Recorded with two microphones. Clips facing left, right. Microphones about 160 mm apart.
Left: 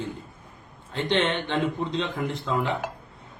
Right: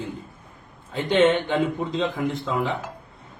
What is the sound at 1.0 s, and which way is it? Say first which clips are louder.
A man's voice: right 6 dB; 5° right (ahead or behind).